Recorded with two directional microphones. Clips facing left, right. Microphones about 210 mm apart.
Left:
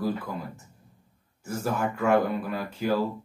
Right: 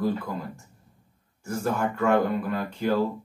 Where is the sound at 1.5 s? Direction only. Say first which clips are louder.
Right 2 dB; 5° left (ahead or behind).